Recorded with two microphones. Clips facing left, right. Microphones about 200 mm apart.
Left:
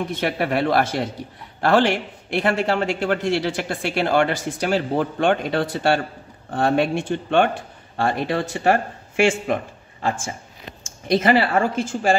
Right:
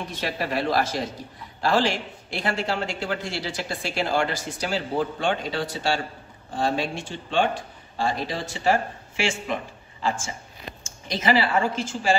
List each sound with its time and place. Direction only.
0.2 s a man's voice: 60° left (ahead or behind)